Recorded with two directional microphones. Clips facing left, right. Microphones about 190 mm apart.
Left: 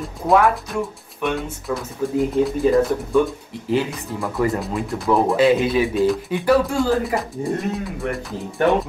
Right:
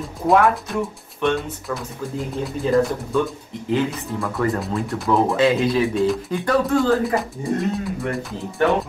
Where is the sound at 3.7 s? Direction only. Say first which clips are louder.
Even; 15° left (ahead or behind).